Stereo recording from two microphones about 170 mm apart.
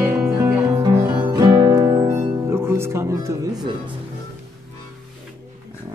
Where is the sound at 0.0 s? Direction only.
10° right (ahead or behind).